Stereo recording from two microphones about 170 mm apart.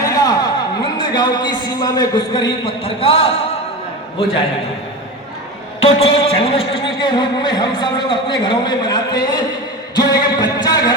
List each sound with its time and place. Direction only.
0.0 s a sound: 20° left (ahead or behind)
0.9 s a man's voice: 25° left (ahead or behind)
5.8 s a man's voice: 35° left (ahead or behind)
9.9 s music: 25° left (ahead or behind)